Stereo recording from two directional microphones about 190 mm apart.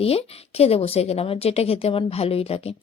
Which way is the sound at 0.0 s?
30° left (ahead or behind).